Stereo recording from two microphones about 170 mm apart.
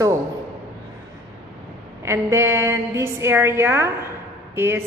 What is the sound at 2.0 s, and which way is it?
A woman's voice, 15° right (ahead or behind).